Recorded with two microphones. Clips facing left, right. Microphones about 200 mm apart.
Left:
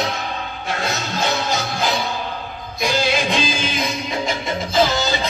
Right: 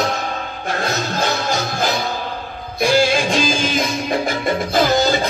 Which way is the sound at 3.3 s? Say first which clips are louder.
Right 3 dB; 45° right (ahead or behind).